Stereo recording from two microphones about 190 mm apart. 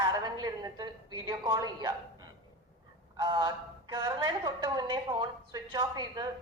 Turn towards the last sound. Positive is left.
turn(degrees=-20)  # may be behind; listen again after turning